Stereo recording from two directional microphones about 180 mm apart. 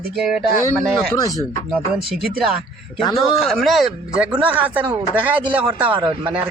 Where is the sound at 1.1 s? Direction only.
20° left (ahead or behind).